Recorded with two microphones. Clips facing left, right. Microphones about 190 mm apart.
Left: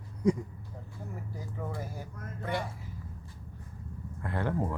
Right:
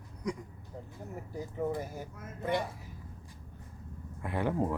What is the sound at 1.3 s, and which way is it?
Speech, 20° right (ahead or behind).